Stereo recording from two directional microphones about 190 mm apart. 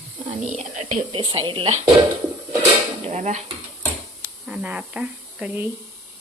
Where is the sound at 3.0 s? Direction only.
35° right (ahead or behind).